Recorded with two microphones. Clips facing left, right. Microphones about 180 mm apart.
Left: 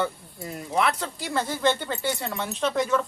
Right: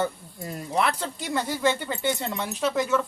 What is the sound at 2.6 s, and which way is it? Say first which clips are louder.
Speech: even; 5° right (ahead or behind).